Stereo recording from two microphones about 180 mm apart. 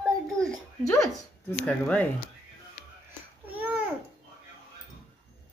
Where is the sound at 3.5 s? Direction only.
10° right (ahead or behind).